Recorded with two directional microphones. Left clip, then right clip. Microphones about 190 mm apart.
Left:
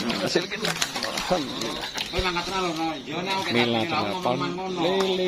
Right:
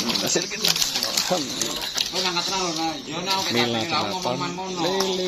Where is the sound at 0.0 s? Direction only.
5° left (ahead or behind).